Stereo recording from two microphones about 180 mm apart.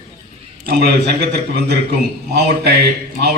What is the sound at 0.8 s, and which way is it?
A man's voice, 60° right (ahead or behind).